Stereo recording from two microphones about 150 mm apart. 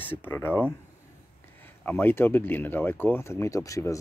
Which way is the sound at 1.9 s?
15° left (ahead or behind).